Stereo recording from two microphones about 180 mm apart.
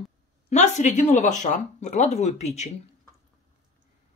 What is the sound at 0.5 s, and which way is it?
Speech, 40° left (ahead or behind).